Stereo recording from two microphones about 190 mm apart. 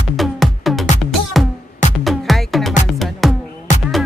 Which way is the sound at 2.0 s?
Centre (ahead or behind).